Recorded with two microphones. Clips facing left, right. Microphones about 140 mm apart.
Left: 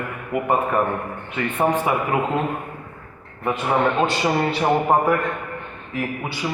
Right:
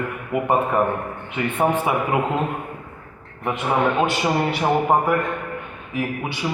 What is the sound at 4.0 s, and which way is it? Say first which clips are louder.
Speech: even; 10° right (ahead or behind).